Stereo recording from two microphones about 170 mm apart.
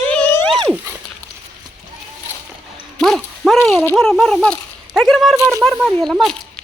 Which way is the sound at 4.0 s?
5° left (ahead or behind).